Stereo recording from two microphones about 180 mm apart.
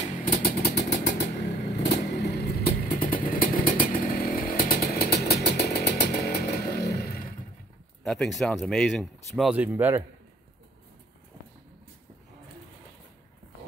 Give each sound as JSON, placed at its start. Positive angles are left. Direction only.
{"t": 0.3, "sound": "vehicle", "side_deg": 60}
{"t": 8.0, "sound": "speech", "side_deg": 0}